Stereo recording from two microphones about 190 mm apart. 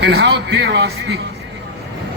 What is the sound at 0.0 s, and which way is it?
Speech, 60° right (ahead or behind).